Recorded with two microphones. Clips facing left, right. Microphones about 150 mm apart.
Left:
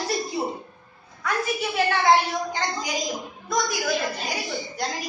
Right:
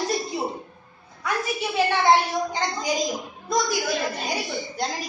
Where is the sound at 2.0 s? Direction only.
25° right (ahead or behind).